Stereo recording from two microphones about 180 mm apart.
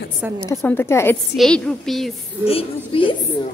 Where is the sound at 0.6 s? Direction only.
10° left (ahead or behind).